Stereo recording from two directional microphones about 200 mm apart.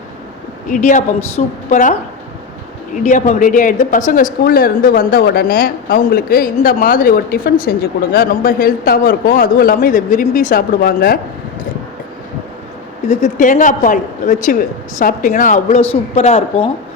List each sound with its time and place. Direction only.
0.7 s speech: 40° left (ahead or behind)
13.1 s speech: 35° left (ahead or behind)